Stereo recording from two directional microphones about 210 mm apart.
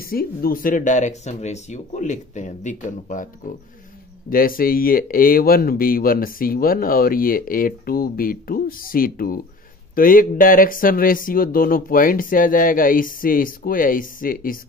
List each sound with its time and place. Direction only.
0.0 s speech: 45° left (ahead or behind)
4.3 s speech: 45° left (ahead or behind)